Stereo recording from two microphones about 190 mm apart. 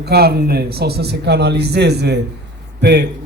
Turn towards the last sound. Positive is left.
turn(degrees=-60)  # may be behind; listen again after turning